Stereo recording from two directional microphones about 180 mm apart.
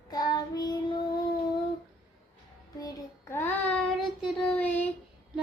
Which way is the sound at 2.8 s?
20° left (ahead or behind).